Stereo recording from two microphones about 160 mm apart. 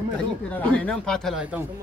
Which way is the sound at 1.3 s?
10° right (ahead or behind).